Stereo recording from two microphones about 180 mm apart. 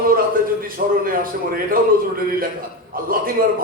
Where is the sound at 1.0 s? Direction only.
50° right (ahead or behind).